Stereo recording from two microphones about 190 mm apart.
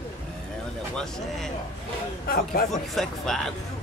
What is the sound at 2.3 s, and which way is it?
Speech, 45° left (ahead or behind).